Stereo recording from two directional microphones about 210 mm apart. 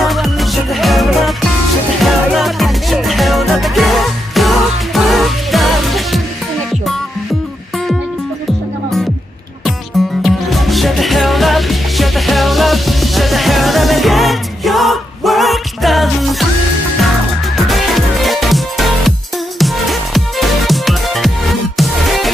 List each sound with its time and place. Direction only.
0.0 s music: centre (ahead or behind)
10.2 s music: centre (ahead or behind)
17.6 s music: centre (ahead or behind)